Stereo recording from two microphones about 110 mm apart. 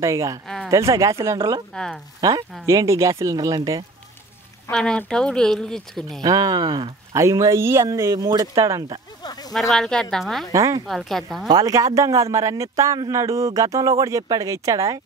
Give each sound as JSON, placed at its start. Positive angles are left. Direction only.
{"t": 0.0, "sound": "speech", "side_deg": -30}
{"t": 4.6, "sound": "speech", "side_deg": 10}
{"t": 6.2, "sound": "speech", "side_deg": -35}
{"t": 7.2, "sound": "speech", "side_deg": -25}
{"t": 9.2, "sound": "a sound", "side_deg": 35}
{"t": 9.5, "sound": "speech", "side_deg": 0}
{"t": 10.5, "sound": "speech", "side_deg": -30}
{"t": 10.9, "sound": "speech", "side_deg": 0}
{"t": 11.4, "sound": "speech", "side_deg": -35}